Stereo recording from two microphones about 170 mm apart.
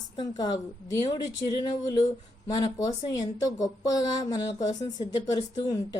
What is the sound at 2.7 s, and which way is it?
Speech, 20° left (ahead or behind).